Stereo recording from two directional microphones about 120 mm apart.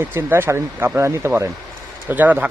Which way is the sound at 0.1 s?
20° right (ahead or behind).